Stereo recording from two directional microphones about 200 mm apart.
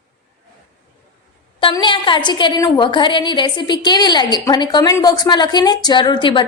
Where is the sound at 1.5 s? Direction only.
25° left (ahead or behind).